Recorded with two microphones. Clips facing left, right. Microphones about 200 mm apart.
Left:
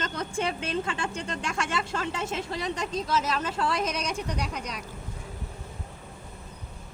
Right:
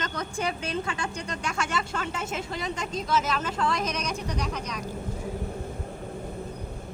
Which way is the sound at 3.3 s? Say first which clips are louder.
Even; 30° left (ahead or behind).